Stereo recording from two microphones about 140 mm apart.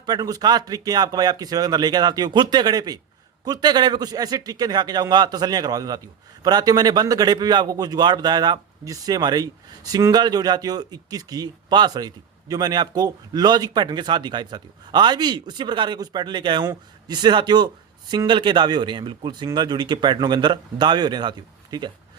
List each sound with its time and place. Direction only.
0.0 s a man's voice: 30° right (ahead or behind)